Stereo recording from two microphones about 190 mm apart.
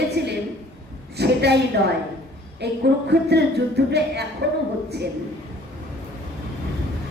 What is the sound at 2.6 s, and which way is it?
Speech, 60° right (ahead or behind).